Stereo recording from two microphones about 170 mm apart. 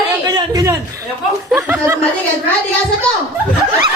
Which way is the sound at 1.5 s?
10° right (ahead or behind).